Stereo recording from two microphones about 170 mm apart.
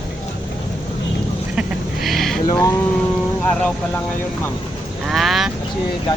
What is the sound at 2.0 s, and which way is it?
Speech, centre (ahead or behind).